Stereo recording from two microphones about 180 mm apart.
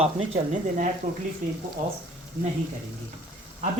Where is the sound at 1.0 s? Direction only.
50° right (ahead or behind).